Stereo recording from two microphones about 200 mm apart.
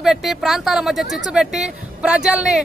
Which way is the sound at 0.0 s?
Centre (ahead or behind).